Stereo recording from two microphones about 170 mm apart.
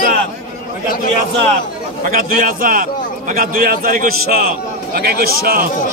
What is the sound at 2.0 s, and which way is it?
A man's voice, 55° right (ahead or behind).